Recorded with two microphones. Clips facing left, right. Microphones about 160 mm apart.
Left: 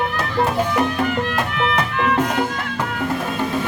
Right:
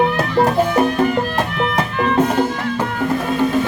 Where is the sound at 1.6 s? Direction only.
35° right (ahead or behind).